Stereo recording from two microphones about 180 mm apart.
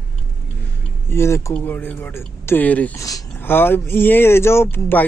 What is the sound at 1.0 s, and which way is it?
A man's voice, 15° left (ahead or behind).